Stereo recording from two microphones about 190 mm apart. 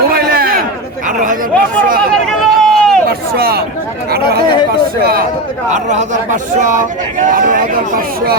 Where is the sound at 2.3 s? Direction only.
Centre (ahead or behind).